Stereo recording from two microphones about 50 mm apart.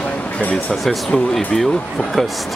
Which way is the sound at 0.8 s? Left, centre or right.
Centre.